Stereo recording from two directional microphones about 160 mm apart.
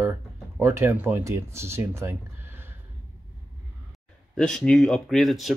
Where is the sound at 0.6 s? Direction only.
15° right (ahead or behind).